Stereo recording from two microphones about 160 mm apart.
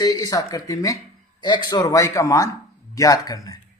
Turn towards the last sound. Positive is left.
turn(degrees=20)  # may be behind; listen again after turning